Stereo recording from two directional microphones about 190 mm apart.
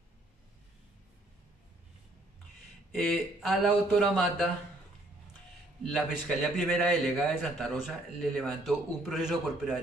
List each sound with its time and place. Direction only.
2.9 s a man's voice: centre (ahead or behind)
5.9 s a man's voice: centre (ahead or behind)